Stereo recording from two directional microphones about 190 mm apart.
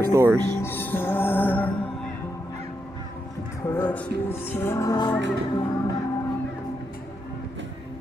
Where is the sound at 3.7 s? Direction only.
10° left (ahead or behind).